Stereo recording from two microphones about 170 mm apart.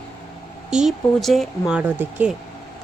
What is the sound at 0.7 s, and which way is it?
Speech, 5° right (ahead or behind).